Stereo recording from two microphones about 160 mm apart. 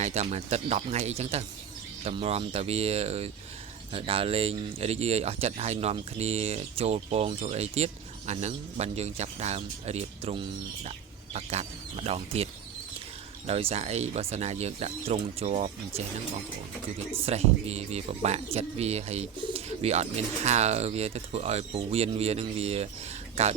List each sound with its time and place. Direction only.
0.0 s speech: 45° right (ahead or behind)
13.5 s speech: 35° right (ahead or behind)
17.2 s speech: 40° right (ahead or behind)